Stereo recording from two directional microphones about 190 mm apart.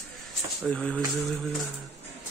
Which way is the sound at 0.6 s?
5° left (ahead or behind).